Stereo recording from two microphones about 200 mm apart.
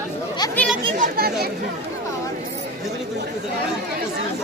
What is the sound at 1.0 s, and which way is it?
Speech, 50° right (ahead or behind).